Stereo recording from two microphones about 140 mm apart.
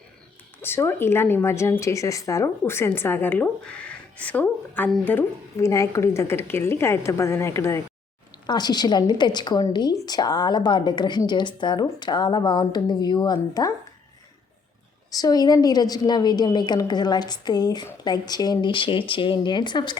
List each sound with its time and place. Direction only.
0.6 s a woman's voice: 15° left (ahead or behind)
8.4 s a woman's voice: 30° left (ahead or behind)
15.1 s a woman's voice: 25° left (ahead or behind)